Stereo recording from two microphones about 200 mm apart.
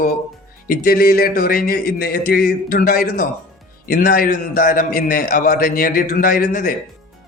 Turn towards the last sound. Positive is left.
turn(degrees=45)  # may be behind; listen again after turning